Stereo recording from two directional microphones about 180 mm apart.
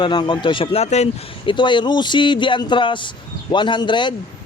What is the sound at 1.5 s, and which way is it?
Speech, 25° left (ahead or behind).